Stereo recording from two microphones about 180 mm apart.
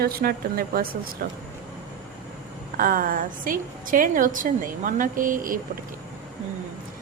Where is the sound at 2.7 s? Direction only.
50° right (ahead or behind).